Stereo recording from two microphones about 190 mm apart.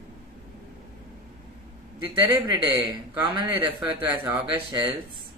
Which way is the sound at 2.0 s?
25° right (ahead or behind).